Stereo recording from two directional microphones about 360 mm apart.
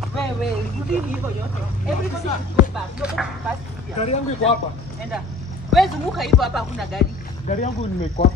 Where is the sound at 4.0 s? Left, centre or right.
Centre.